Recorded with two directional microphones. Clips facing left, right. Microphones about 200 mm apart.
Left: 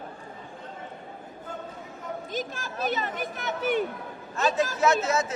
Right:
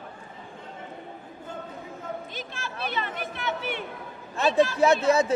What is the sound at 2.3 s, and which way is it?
Speech, 40° left (ahead or behind).